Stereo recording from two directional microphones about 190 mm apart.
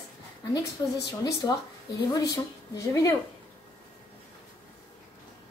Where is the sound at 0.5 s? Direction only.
20° left (ahead or behind).